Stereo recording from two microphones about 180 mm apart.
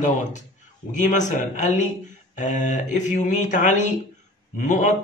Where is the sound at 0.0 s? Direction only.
45° left (ahead or behind).